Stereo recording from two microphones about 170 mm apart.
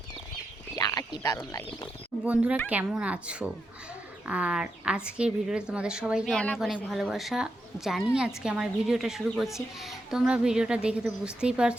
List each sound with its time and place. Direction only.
0.8 s speech: 25° left (ahead or behind)
2.2 s a woman's voice: 10° right (ahead or behind)
6.7 s speech: 10° left (ahead or behind)
7.0 s a woman's voice: centre (ahead or behind)